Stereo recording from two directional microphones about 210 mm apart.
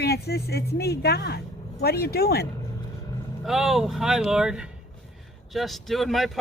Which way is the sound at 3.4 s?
Centre (ahead or behind).